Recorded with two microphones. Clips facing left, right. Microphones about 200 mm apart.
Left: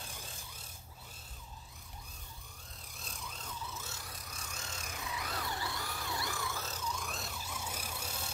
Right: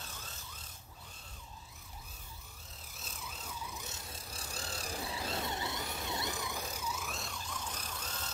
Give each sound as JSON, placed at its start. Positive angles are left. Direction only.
{"t": 0.0, "sound": "vehicle", "side_deg": 15}
{"t": 2.9, "sound": "vehicle", "side_deg": -5}